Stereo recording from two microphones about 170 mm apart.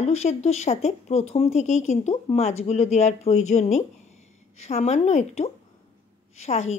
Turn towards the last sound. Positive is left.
turn(degrees=40)  # may be behind; listen again after turning